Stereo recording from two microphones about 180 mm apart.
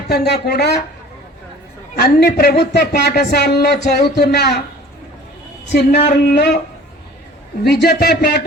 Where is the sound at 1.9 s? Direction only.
60° left (ahead or behind).